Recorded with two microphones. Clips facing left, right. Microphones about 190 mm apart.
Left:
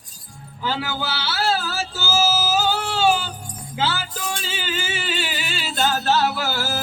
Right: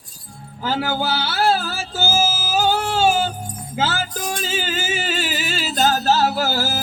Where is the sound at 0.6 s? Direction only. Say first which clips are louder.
Right 4 dB; 45° right (ahead or behind).